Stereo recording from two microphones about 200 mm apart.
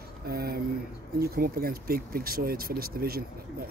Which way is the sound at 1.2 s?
50° right (ahead or behind).